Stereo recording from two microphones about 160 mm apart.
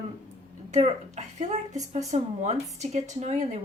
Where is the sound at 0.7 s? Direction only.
45° right (ahead or behind).